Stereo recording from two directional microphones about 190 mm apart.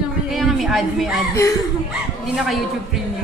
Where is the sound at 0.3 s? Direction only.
Centre (ahead or behind).